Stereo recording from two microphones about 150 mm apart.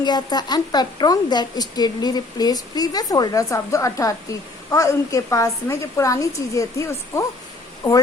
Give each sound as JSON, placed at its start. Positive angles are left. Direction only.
{"t": 0.0, "sound": "a woman's voice", "side_deg": 30}